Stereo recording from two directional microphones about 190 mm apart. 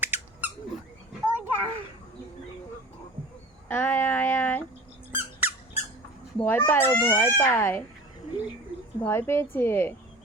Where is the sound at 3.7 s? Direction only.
10° left (ahead or behind).